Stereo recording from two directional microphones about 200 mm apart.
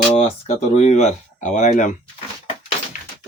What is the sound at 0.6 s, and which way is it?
Speech, 35° left (ahead or behind).